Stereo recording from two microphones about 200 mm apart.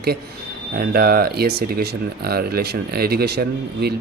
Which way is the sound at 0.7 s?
50° right (ahead or behind).